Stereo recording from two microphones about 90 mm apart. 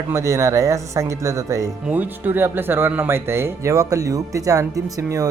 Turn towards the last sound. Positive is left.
turn(degrees=-40)  # may be behind; listen again after turning